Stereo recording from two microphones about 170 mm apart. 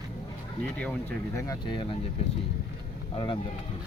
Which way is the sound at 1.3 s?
20° left (ahead or behind).